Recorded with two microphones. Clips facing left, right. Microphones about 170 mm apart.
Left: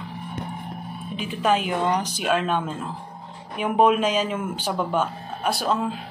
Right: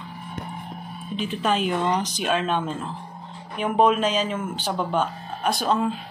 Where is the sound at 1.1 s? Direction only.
10° left (ahead or behind).